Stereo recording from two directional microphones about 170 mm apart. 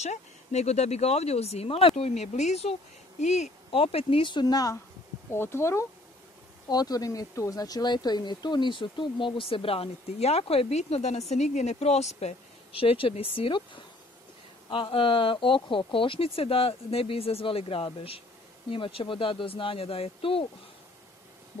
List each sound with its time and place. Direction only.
0.0 s speech: 40° left (ahead or behind)